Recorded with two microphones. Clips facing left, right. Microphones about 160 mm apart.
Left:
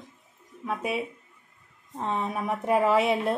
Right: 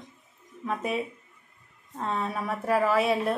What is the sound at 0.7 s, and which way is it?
A woman's voice, 10° left (ahead or behind).